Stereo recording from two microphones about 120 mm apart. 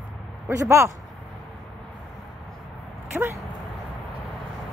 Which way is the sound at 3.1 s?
5° right (ahead or behind).